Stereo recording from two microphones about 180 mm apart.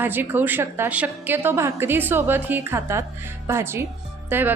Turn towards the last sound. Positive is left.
turn(degrees=-10)  # may be behind; listen again after turning